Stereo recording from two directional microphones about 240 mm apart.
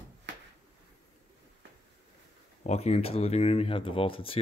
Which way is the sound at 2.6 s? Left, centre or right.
Left.